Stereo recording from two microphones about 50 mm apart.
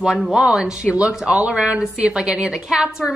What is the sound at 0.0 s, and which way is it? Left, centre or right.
Speech, centre.